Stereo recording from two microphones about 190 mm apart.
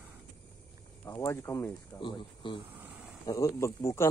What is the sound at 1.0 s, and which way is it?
Speech, 15° left (ahead or behind).